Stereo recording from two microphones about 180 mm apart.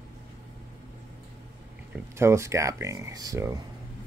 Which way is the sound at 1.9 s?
15° right (ahead or behind).